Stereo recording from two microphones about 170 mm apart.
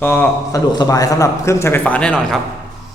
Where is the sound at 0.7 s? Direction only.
20° left (ahead or behind); by 2.4 s 5° left (ahead or behind).